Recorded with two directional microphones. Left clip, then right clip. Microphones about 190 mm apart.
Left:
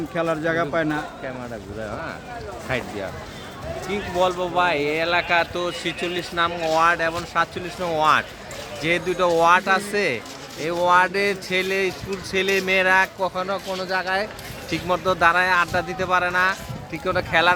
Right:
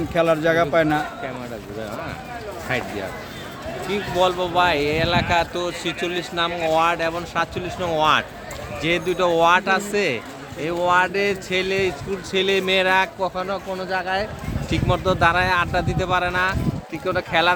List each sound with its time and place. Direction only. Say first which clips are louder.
0.1 s a man's voice: right 5 dB; 25° right (ahead or behind)
3.8 s speech: right 2 dB; centre (ahead or behind)